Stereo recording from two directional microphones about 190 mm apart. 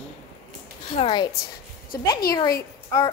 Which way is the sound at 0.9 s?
25° left (ahead or behind).